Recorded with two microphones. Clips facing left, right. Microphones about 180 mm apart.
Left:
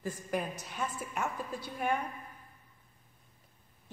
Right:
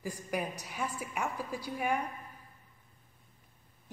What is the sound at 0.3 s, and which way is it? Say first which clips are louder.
A woman's voice: even; 10° right (ahead or behind).